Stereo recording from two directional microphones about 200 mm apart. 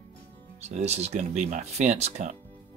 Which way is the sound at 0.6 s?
35° right (ahead or behind).